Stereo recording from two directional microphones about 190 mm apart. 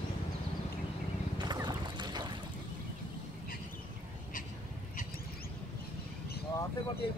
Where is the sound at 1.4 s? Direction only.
25° right (ahead or behind).